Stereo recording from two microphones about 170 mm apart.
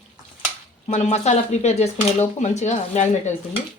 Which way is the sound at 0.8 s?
40° left (ahead or behind).